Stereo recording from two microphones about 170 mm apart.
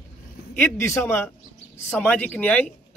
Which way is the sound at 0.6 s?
15° left (ahead or behind).